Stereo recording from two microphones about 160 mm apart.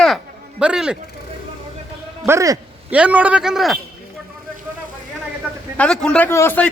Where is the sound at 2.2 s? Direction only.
20° right (ahead or behind); by 3.8 s centre (ahead or behind).